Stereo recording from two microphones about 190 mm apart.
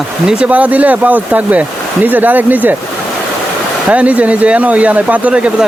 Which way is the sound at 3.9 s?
5° right (ahead or behind).